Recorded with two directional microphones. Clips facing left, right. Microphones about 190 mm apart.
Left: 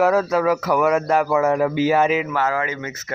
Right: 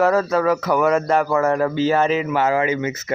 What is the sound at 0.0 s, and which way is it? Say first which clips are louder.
Speech: even; 5° left (ahead or behind).